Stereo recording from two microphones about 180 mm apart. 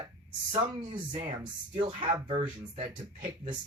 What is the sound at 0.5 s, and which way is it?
Speech, 30° right (ahead or behind).